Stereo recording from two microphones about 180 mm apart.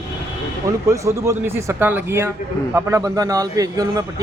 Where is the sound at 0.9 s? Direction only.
15° right (ahead or behind).